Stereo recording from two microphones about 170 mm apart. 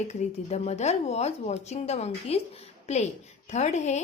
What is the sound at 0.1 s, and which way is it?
A woman's voice, 40° left (ahead or behind).